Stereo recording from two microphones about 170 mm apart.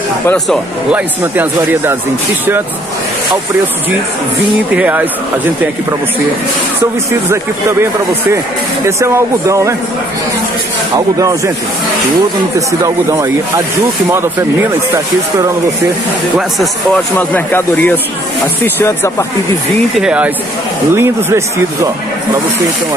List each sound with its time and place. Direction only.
0.9 s speech: 10° right (ahead or behind)
4.7 s speech: 10° right (ahead or behind)
8.8 s speech: 15° right (ahead or behind)
11.1 s speech: 20° right (ahead or behind)
12.5 s speech: 20° right (ahead or behind)
16.3 s speech: centre (ahead or behind)
17.2 s speech: 10° left (ahead or behind)
20.0 s speech: 5° right (ahead or behind)